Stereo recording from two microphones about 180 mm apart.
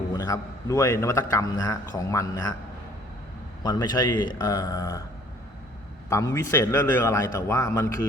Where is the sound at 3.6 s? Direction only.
25° left (ahead or behind).